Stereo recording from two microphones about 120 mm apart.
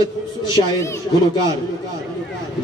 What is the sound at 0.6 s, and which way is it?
Speech, 40° left (ahead or behind).